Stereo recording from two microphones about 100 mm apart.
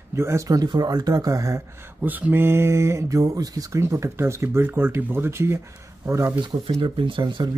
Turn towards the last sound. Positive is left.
turn(degrees=-50)  # may be behind; listen again after turning